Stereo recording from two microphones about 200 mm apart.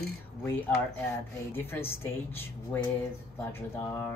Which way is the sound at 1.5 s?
10° left (ahead or behind).